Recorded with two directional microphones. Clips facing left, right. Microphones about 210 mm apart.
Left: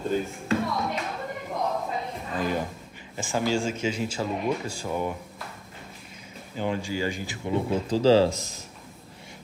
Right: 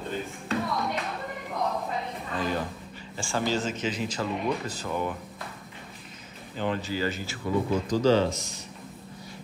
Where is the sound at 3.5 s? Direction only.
10° left (ahead or behind).